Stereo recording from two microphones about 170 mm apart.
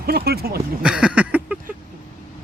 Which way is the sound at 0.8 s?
5° right (ahead or behind).